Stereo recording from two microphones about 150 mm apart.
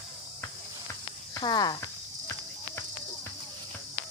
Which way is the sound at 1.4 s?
30° left (ahead or behind).